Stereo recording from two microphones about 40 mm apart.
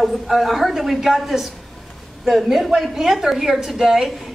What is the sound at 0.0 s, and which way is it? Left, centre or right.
Speech, centre.